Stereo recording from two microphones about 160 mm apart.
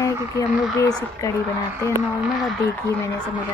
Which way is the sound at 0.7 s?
20° left (ahead or behind).